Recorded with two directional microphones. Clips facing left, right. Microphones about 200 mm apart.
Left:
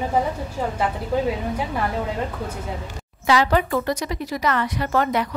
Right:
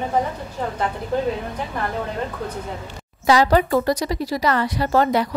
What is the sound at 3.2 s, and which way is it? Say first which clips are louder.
A woman's voice: right 3 dB; 40° right (ahead or behind).